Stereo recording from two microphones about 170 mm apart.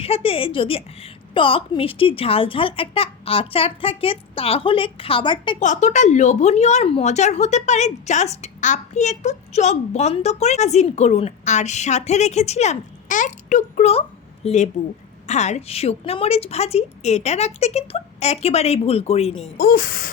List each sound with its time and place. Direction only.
0.0 s speech: 35° left (ahead or behind)
5.5 s speech: 45° left (ahead or behind)
19.5 s speech: 60° left (ahead or behind)